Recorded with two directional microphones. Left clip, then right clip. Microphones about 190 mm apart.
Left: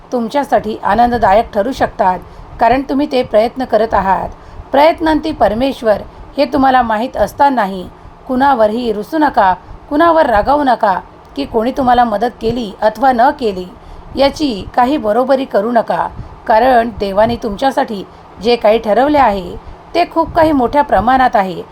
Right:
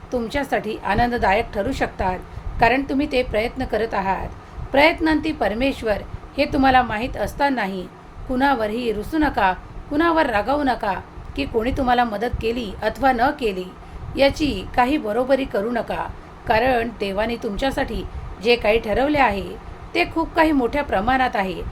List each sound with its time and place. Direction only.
0.1 s a woman's voice: 25° left (ahead or behind)